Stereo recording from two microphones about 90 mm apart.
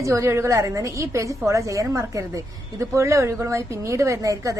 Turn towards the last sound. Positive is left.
turn(degrees=-35)  # may be behind; listen again after turning